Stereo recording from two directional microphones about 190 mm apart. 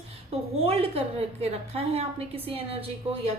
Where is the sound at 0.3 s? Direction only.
30° right (ahead or behind).